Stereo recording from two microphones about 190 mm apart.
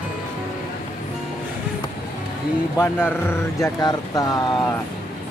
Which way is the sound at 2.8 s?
10° left (ahead or behind).